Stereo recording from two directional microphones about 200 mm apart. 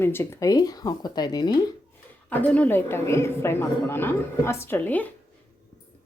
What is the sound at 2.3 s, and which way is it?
A woman's voice, 10° left (ahead or behind).